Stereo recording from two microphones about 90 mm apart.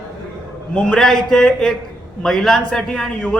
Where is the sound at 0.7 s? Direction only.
10° left (ahead or behind).